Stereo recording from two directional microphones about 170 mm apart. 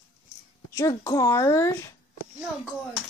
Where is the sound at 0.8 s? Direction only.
20° left (ahead or behind).